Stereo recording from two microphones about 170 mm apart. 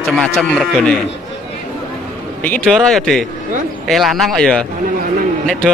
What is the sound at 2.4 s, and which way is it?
Speech, 5° left (ahead or behind).